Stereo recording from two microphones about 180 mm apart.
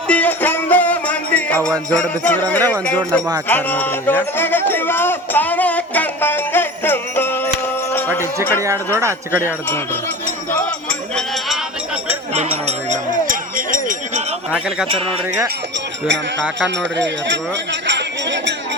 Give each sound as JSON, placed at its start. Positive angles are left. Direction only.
{"t": 0.1, "sound": "music", "side_deg": 10}
{"t": 2.8, "sound": "speech", "side_deg": 5}
{"t": 3.5, "sound": "music", "side_deg": 10}
{"t": 9.0, "sound": "speech", "side_deg": -15}
{"t": 9.6, "sound": "speech", "side_deg": 10}
{"t": 10.5, "sound": "music", "side_deg": 5}
{"t": 12.3, "sound": "a sound", "side_deg": -40}
{"t": 17.0, "sound": "a sound", "side_deg": -80}